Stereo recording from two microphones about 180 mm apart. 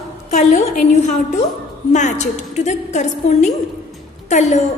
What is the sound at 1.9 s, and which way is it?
A woman's voice, 40° left (ahead or behind).